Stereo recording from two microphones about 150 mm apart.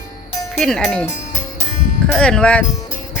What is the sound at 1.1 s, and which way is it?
Music, 50° left (ahead or behind).